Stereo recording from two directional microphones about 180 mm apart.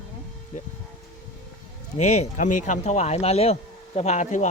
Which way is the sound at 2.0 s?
40° left (ahead or behind).